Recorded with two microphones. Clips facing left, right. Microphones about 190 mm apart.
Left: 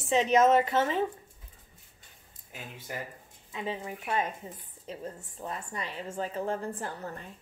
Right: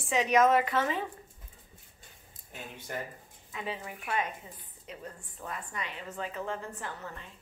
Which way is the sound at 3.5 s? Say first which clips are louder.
Left 3 dB; 25° left (ahead or behind).